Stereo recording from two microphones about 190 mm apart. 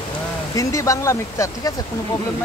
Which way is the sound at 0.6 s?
15° left (ahead or behind).